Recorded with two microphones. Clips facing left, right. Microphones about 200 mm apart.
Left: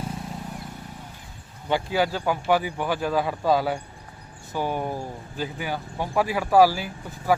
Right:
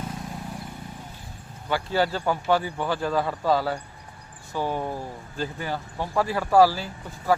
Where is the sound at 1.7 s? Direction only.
10° left (ahead or behind).